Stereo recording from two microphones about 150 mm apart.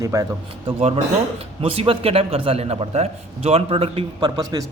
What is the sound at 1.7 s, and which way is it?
A man's voice, 40° right (ahead or behind).